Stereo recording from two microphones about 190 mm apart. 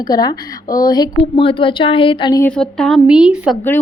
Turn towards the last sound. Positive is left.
turn(degrees=-5)  # may be behind; listen again after turning